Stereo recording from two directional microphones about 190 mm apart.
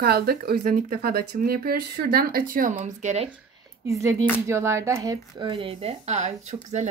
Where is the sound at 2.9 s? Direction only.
35° right (ahead or behind).